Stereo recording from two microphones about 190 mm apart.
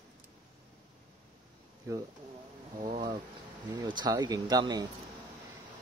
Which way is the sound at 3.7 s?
20° right (ahead or behind).